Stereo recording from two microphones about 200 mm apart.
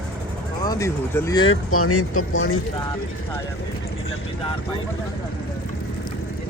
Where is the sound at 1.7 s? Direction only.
90° left.